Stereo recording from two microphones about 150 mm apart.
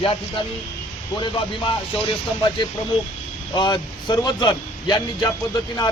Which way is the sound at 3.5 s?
30° left (ahead or behind).